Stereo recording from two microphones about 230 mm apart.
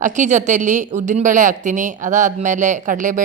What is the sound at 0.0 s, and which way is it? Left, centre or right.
A woman's voice, right.